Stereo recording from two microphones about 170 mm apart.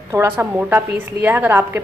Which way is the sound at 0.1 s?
15° right (ahead or behind).